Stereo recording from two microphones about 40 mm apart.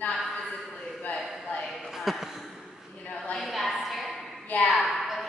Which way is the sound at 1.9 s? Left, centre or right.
Centre.